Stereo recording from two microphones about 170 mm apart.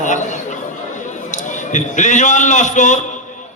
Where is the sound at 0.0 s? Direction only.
45° left (ahead or behind).